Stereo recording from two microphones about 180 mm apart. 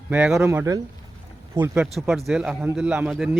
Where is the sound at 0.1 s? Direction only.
5° right (ahead or behind).